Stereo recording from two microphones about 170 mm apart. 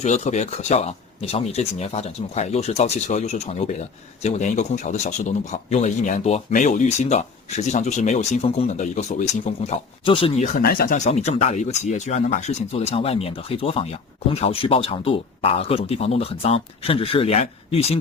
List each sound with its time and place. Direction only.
0.0 s a man's voice: 45° left (ahead or behind)
10.6 s speech: 60° left (ahead or behind); by 17.9 s 35° left (ahead or behind)